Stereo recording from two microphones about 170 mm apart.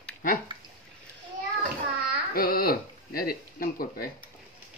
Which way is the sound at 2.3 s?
60° left (ahead or behind).